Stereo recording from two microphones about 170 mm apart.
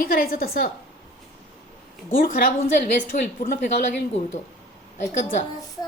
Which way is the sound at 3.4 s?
45° left (ahead or behind).